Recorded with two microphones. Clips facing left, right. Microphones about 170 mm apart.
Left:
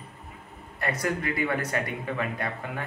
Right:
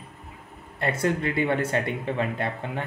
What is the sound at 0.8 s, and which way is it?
Speech, 25° right (ahead or behind).